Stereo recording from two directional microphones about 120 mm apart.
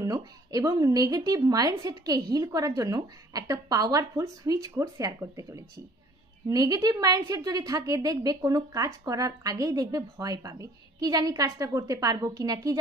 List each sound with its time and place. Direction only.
0.0 s a woman's voice: 30° right (ahead or behind)